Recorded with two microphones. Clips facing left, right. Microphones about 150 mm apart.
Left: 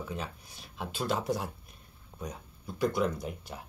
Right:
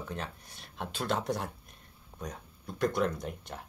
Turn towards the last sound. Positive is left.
turn(degrees=5)  # may be behind; listen again after turning